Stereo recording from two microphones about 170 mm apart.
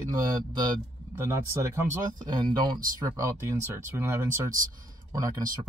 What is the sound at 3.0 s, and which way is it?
Speech, 20° right (ahead or behind).